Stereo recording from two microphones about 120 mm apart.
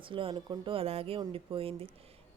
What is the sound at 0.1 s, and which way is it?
A woman's voice, 45° right (ahead or behind).